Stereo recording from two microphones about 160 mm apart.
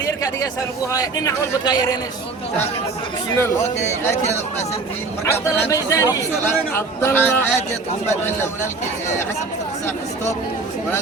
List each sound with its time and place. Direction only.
0.0 s a sound: 20° left (ahead or behind)
0.9 s speech: 20° left (ahead or behind)
5.2 s speech: 15° left (ahead or behind)